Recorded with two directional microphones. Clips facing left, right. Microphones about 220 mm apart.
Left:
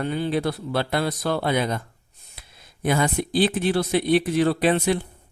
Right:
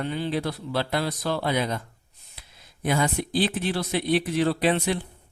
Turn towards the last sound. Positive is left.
turn(degrees=50)  # may be behind; listen again after turning